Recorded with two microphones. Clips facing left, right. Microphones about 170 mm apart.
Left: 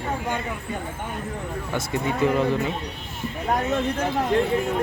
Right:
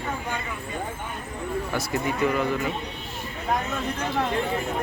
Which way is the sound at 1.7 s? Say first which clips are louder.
Left 5 dB; 30° left (ahead or behind).